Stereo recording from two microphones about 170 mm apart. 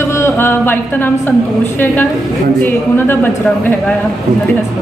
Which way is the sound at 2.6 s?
10° left (ahead or behind).